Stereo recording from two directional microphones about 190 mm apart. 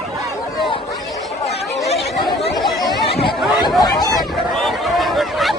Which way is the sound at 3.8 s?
20° left (ahead or behind).